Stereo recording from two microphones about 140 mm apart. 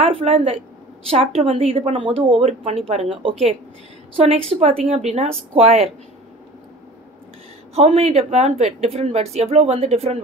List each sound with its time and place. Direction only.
0.0 s a woman's voice: 45° right (ahead or behind)
7.7 s a woman's voice: 50° right (ahead or behind)